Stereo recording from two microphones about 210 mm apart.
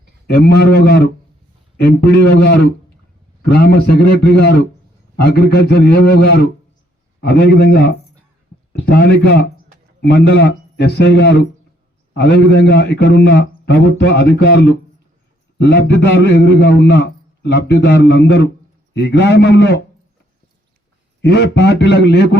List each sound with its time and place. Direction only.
0.3 s a man's voice: 50° left (ahead or behind)
21.2 s a man's voice: 50° left (ahead or behind)